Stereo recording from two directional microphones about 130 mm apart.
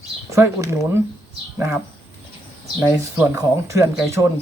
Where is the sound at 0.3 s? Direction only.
20° right (ahead or behind).